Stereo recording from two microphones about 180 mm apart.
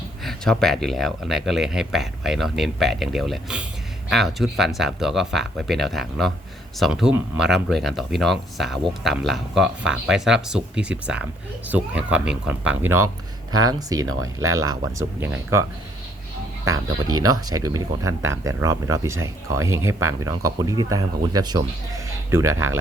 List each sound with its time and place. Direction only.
0.3 s speech: centre (ahead or behind); by 15.6 s 15° right (ahead or behind)
17.1 s speech: 20° right (ahead or behind)